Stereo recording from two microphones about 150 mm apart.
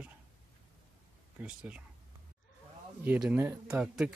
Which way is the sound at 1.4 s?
10° right (ahead or behind).